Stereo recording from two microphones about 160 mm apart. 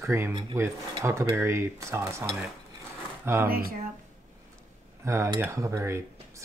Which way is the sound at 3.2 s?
15° right (ahead or behind).